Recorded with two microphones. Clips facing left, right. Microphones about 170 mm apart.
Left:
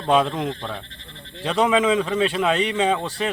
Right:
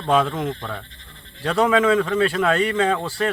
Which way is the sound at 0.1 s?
20° left (ahead or behind).